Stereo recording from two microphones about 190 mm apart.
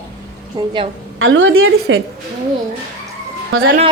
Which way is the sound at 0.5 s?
25° right (ahead or behind).